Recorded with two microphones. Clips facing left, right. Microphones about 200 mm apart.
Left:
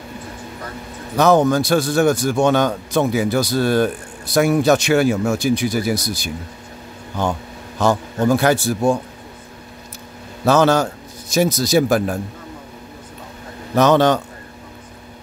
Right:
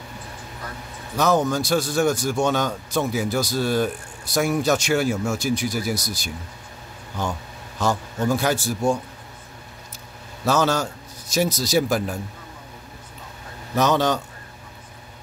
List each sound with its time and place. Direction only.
1.1 s a man's voice: 60° left (ahead or behind)
7.8 s a man's voice: 60° left (ahead or behind)
10.4 s a man's voice: 60° left (ahead or behind)
13.7 s a man's voice: 60° left (ahead or behind)